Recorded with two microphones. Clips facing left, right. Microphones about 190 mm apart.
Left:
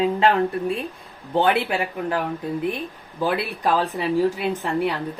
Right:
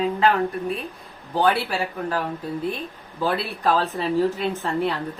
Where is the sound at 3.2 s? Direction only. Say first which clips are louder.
Even; 15° left (ahead or behind).